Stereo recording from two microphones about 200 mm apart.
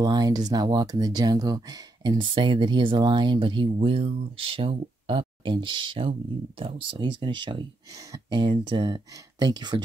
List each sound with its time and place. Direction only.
0.0 s speech: 20° right (ahead or behind)